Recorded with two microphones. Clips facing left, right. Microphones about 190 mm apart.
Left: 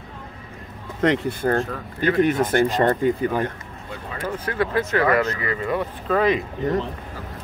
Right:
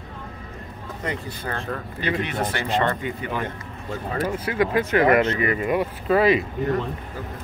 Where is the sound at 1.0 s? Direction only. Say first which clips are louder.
Left 10 dB; 90° left.